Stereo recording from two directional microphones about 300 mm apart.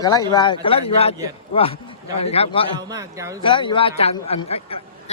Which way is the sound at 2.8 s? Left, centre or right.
Centre.